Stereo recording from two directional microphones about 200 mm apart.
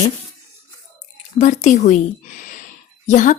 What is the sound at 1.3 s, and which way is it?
Speech, 35° left (ahead or behind).